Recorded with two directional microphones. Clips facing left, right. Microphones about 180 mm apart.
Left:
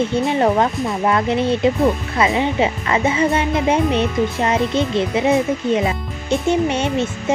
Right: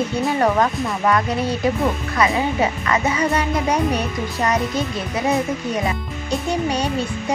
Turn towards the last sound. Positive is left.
turn(degrees=25)  # may be behind; listen again after turning